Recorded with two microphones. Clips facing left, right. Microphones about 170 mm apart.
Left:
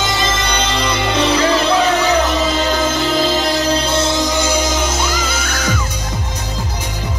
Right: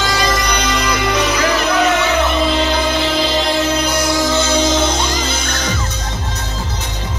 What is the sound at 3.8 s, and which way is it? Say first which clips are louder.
Music: even; 25° left (ahead or behind).